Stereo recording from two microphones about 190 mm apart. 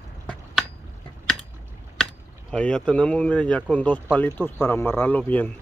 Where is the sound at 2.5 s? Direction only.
5° left (ahead or behind).